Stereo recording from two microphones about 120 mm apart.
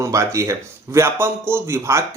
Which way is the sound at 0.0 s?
25° right (ahead or behind).